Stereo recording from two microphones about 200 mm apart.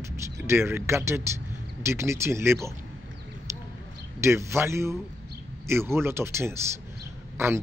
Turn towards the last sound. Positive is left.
turn(degrees=-15)  # may be behind; listen again after turning